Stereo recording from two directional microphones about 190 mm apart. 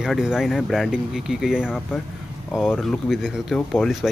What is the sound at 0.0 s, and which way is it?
Speech, centre (ahead or behind).